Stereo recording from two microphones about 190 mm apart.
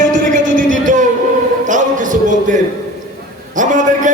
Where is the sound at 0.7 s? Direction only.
40° right (ahead or behind).